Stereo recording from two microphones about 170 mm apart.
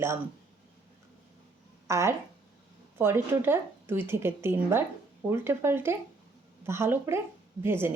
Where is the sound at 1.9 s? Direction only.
15° right (ahead or behind).